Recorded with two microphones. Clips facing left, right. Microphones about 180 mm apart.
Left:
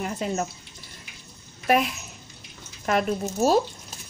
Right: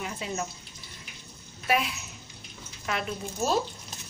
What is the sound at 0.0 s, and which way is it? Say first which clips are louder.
Speech: left 6 dB; 45° left (ahead or behind).